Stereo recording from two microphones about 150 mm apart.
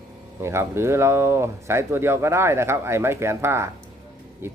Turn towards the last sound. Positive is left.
turn(degrees=-15)  # may be behind; listen again after turning